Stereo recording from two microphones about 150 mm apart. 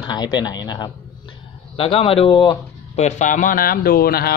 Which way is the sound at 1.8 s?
40° left (ahead or behind).